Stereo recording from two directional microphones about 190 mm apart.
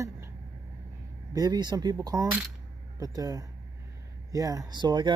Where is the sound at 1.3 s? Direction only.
20° right (ahead or behind).